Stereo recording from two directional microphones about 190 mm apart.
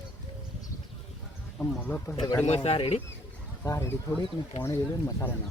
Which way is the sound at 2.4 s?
30° left (ahead or behind).